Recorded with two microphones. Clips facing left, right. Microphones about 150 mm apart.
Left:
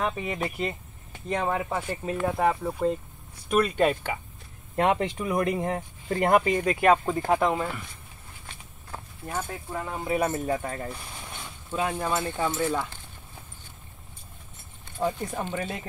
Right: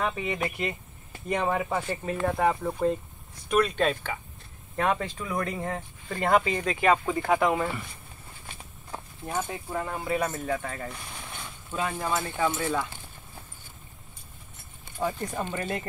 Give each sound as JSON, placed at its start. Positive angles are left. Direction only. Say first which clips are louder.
{"t": 0.0, "sound": "speech", "louder": "even", "side_deg": 5}
{"t": 8.9, "sound": "speech", "louder": "right 2 dB", "side_deg": -10}
{"t": 10.0, "sound": "speech", "louder": "left 3 dB", "side_deg": 10}
{"t": 10.3, "sound": "speech", "louder": "left 3 dB", "side_deg": 30}
{"t": 11.8, "sound": "speech", "louder": "left 2 dB", "side_deg": 10}
{"t": 15.1, "sound": "speech", "louder": "left 1 dB", "side_deg": 5}